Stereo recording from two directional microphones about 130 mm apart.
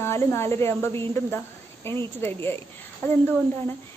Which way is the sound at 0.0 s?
20° left (ahead or behind).